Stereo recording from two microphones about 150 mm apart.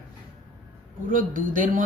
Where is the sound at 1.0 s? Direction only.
65° right (ahead or behind).